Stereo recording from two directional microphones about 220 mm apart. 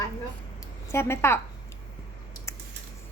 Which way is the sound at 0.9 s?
10° left (ahead or behind).